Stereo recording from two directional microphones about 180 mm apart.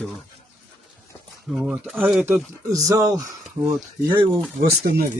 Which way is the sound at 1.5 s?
5° right (ahead or behind).